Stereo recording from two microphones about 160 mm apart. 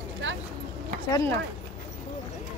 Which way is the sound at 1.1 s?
20° left (ahead or behind).